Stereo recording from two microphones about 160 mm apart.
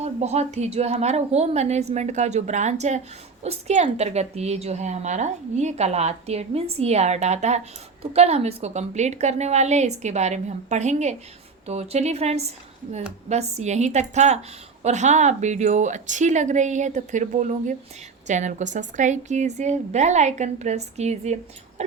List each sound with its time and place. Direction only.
0.0 s a woman's voice: 45° right (ahead or behind)